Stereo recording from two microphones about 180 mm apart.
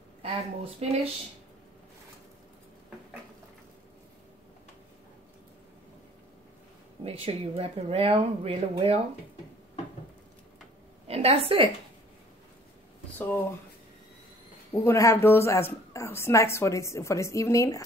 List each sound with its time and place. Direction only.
0.2 s speech: 35° right (ahead or behind)
7.1 s speech: 30° right (ahead or behind)
11.1 s a woman's voice: 35° right (ahead or behind)
14.7 s a woman's voice: 15° left (ahead or behind)